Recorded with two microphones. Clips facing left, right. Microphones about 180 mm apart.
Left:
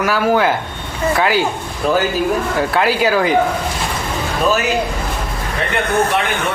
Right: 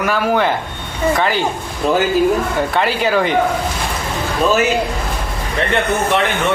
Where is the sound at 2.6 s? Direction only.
5° left (ahead or behind).